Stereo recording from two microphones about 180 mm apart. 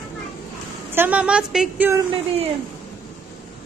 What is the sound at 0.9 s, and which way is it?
Speech, 10° right (ahead or behind).